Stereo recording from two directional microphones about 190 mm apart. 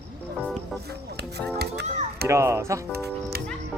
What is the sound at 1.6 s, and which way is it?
Children playing, 60° right (ahead or behind).